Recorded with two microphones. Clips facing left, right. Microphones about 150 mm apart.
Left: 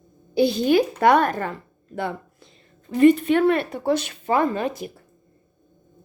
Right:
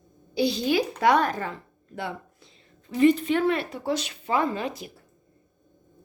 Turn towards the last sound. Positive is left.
turn(degrees=50)  # may be behind; listen again after turning